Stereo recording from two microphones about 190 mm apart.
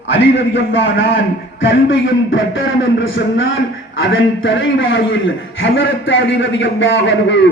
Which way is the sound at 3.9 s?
85° left.